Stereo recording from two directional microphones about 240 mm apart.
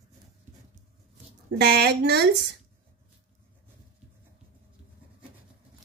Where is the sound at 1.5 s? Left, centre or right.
Right.